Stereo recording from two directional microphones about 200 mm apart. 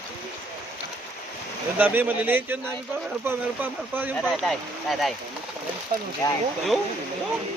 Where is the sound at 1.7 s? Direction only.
10° right (ahead or behind).